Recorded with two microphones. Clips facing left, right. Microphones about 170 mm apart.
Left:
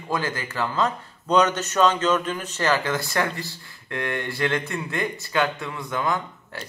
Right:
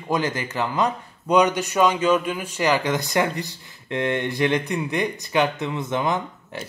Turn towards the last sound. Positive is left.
turn(degrees=-20)  # may be behind; listen again after turning